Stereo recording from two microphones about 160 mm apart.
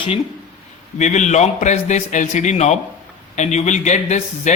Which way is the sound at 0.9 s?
45° left (ahead or behind).